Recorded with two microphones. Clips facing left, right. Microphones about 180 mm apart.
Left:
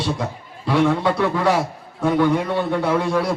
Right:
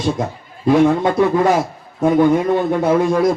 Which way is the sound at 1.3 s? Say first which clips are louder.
Right 4 dB; 45° right (ahead or behind).